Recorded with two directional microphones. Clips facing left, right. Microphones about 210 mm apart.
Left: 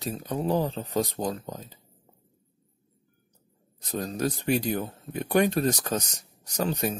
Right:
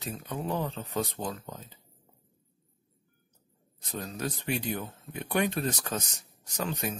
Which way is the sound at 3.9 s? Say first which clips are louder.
Left 6 dB; 40° left (ahead or behind).